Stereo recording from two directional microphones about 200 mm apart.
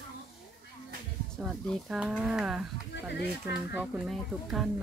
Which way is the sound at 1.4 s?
Centre (ahead or behind).